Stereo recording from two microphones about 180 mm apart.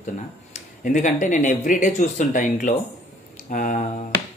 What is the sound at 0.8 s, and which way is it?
Speech, 45° left (ahead or behind).